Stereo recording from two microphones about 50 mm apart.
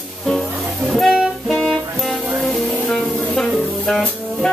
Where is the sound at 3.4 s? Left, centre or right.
Centre.